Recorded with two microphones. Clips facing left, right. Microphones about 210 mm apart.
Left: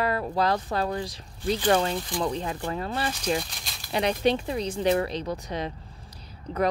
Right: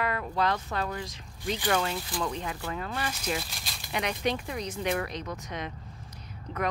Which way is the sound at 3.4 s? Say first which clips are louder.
Even; centre (ahead or behind).